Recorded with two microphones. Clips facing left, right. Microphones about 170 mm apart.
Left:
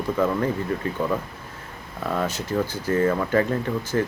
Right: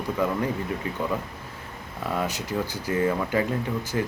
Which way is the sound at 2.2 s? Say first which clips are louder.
Left 4 dB; 15° right (ahead or behind).